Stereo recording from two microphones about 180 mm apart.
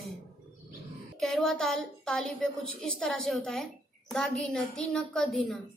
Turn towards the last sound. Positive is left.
turn(degrees=0)  # may be behind; listen again after turning